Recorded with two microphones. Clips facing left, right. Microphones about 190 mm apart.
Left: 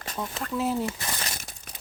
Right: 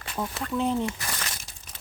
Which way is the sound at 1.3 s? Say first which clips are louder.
Left 4 dB; 50° left (ahead or behind).